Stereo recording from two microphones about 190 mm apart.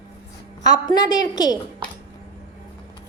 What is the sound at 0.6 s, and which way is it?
Speech, 20° left (ahead or behind).